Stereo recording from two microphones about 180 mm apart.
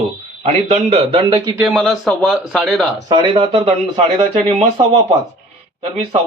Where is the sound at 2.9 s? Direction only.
25° right (ahead or behind).